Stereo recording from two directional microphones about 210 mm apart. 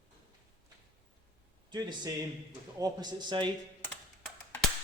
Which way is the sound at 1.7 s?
20° right (ahead or behind).